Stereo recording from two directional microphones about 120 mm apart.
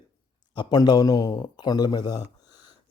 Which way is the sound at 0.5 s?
35° left (ahead or behind).